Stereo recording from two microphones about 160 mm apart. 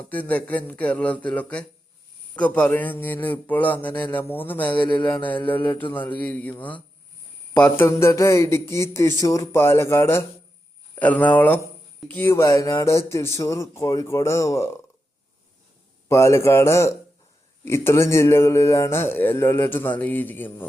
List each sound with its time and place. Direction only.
0.1 s a man's voice: 10° left (ahead or behind)
16.0 s a man's voice: 15° left (ahead or behind)